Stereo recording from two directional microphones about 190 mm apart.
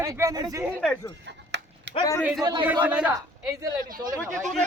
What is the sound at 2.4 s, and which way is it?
Speech, 20° right (ahead or behind).